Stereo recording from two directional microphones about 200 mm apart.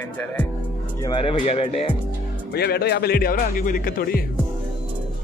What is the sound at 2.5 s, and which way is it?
A man's voice, 55° left (ahead or behind).